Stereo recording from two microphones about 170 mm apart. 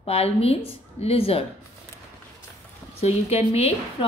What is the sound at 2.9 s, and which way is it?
Speech, 35° left (ahead or behind).